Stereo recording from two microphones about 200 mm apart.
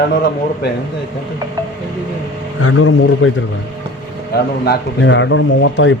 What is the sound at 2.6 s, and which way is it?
Speech, 90° left.